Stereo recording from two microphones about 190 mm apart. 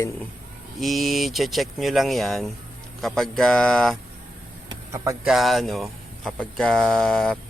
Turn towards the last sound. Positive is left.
turn(degrees=0)  # may be behind; listen again after turning